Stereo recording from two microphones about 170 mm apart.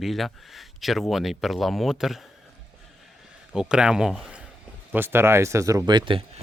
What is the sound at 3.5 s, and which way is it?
Speech, 5° right (ahead or behind).